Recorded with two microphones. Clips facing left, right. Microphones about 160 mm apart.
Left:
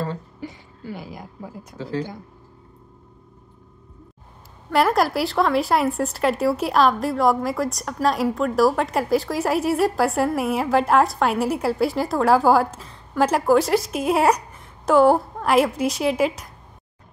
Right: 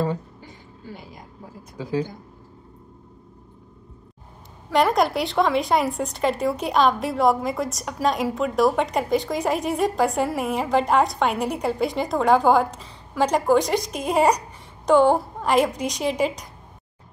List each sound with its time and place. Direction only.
0.4 s a sound: 80° left
1.8 s speech: 15° right (ahead or behind)
4.6 s a woman's voice: centre (ahead or behind)